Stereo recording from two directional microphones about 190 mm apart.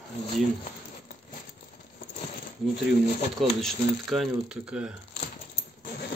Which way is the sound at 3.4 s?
Centre (ahead or behind).